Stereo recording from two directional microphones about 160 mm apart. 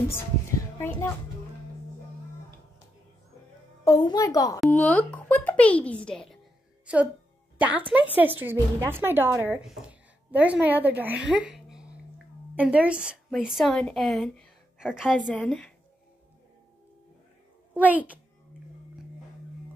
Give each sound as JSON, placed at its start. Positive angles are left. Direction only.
{"t": 0.7, "sound": "a child's voice", "side_deg": 15}
{"t": 3.8, "sound": "a child's voice", "side_deg": 25}
{"t": 4.6, "sound": "a woman's voice", "side_deg": 10}
{"t": 6.9, "sound": "a woman's voice", "side_deg": -10}
{"t": 11.4, "sound": "a sound", "side_deg": -5}
{"t": 12.5, "sound": "a woman's voice", "side_deg": -10}
{"t": 17.7, "sound": "a woman's voice", "side_deg": -10}